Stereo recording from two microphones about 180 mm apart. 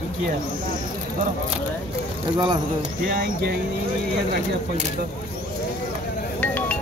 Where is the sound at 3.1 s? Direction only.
55° right (ahead or behind).